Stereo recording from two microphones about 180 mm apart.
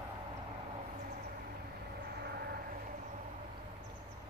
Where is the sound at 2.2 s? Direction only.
60° right (ahead or behind).